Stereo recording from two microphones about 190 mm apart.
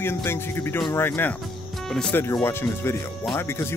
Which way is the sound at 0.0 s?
10° left (ahead or behind).